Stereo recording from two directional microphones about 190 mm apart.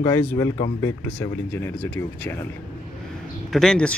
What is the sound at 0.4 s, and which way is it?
Speech, 15° left (ahead or behind).